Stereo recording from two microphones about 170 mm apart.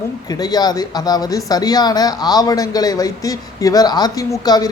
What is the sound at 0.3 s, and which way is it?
Speech, 25° left (ahead or behind).